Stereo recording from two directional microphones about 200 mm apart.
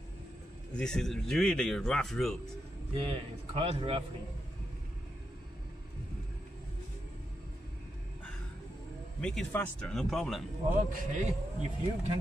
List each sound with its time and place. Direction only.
0.7 s a man's voice: 5° left (ahead or behind)
3.1 s a man's voice: 25° right (ahead or behind)
9.2 s a man's voice: 5° left (ahead or behind)
10.9 s speech: 35° right (ahead or behind)